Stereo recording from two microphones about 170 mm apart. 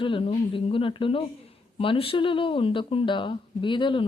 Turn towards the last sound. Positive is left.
turn(degrees=30)  # may be behind; listen again after turning